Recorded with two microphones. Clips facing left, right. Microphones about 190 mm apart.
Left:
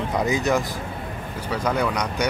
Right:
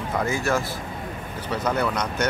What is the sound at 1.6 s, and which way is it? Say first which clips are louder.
Speech: left 1 dB; 10° left (ahead or behind).